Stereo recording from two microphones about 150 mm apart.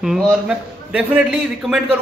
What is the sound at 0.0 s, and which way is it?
A man's voice, 5° right (ahead or behind).